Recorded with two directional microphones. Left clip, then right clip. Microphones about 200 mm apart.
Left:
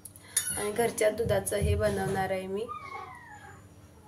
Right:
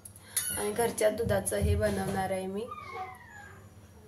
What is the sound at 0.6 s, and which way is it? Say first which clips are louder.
A woman's voice: left 1 dB; 5° left (ahead or behind).